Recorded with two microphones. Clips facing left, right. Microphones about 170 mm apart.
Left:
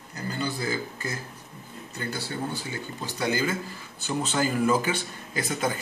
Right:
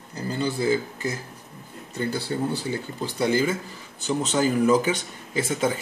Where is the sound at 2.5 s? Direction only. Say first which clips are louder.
Right 6 dB; 30° right (ahead or behind).